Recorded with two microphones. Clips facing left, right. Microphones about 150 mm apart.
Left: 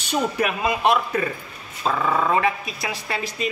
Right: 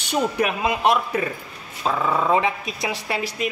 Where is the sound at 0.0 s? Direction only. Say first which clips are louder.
Right 1 dB; 15° right (ahead or behind).